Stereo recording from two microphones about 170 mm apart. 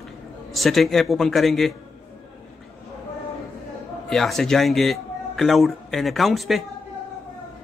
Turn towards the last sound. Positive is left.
turn(degrees=0)  # may be behind; listen again after turning